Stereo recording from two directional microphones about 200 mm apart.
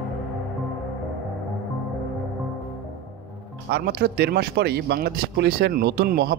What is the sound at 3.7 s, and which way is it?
Speech, 55° right (ahead or behind).